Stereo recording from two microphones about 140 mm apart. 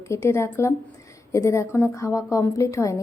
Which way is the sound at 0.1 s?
20° left (ahead or behind).